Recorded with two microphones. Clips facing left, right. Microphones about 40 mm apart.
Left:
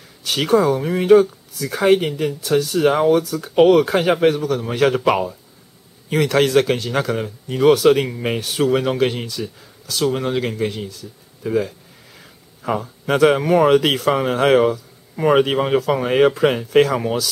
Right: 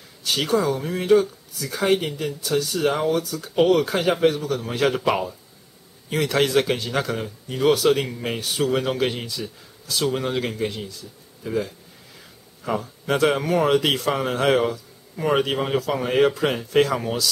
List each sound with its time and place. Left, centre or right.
0.3 s speech: centre
9.8 s speech: centre
10.1 s speech: centre